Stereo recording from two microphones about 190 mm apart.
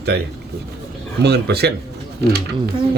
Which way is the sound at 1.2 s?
60° right (ahead or behind).